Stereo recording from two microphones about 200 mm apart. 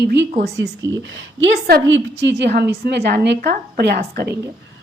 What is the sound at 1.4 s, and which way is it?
A woman's voice, 60° right (ahead or behind).